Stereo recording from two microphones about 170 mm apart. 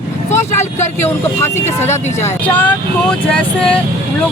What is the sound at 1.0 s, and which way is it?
Speech, 15° left (ahead or behind).